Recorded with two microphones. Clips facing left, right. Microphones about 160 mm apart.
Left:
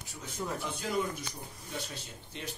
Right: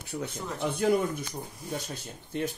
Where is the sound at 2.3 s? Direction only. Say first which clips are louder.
Right 12 dB; 50° right (ahead or behind).